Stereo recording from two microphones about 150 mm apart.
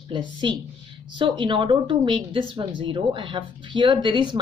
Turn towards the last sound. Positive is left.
turn(degrees=-30)  # may be behind; listen again after turning